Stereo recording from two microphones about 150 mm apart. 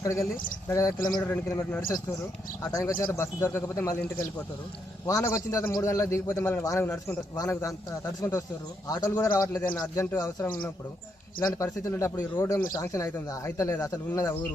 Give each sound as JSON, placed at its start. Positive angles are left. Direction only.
{"t": 0.0, "sound": "a man's voice", "side_deg": 20}
{"t": 3.1, "sound": "speech", "side_deg": 15}
{"t": 5.0, "sound": "a man's voice", "side_deg": 20}